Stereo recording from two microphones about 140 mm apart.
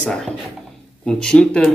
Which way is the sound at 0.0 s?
5° left (ahead or behind).